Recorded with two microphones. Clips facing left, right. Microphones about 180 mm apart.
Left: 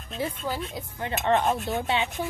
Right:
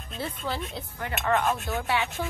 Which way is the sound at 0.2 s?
10° left (ahead or behind).